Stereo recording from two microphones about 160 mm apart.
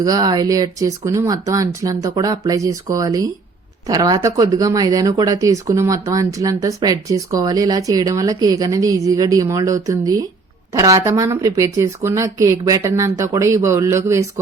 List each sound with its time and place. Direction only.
0.0 s speech: 25° right (ahead or behind)